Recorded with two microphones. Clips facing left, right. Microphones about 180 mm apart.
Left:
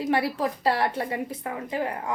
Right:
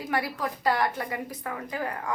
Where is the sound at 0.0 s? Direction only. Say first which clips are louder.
Left 5 dB; 30° left (ahead or behind).